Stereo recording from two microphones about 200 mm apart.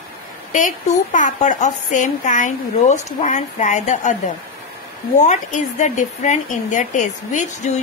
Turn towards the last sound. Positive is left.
turn(degrees=35)  # may be behind; listen again after turning